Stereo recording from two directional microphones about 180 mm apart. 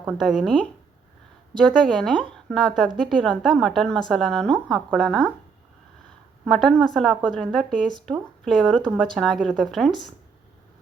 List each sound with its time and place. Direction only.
0.0 s a woman's voice: 5° right (ahead or behind)
6.4 s a woman's voice: 5° left (ahead or behind)